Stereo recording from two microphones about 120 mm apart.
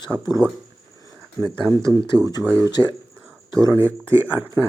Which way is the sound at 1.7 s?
30° right (ahead or behind).